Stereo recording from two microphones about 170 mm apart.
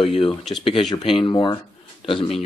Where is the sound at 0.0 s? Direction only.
30° left (ahead or behind).